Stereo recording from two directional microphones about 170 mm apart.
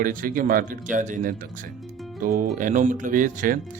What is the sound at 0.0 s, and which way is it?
Speech, 55° right (ahead or behind).